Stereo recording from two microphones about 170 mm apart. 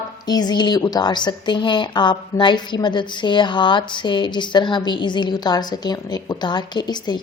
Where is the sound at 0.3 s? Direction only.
25° left (ahead or behind).